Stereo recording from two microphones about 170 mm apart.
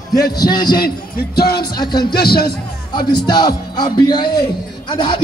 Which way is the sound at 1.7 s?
25° left (ahead or behind).